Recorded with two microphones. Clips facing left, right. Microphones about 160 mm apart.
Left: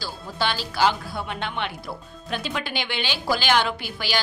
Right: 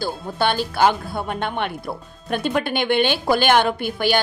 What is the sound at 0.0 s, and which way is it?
A woman's voice, 55° right (ahead or behind).